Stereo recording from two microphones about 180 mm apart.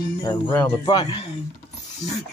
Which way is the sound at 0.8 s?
25° left (ahead or behind).